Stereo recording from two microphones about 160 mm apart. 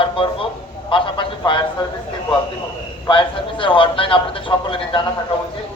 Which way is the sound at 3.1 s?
30° left (ahead or behind).